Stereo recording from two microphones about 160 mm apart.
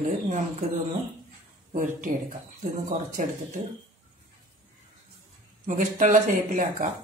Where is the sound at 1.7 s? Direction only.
55° right (ahead or behind).